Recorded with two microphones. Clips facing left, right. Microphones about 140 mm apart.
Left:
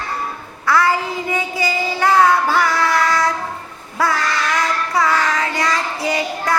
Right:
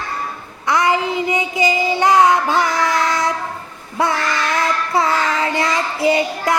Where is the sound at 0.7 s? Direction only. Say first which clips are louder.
Even; 20° right (ahead or behind).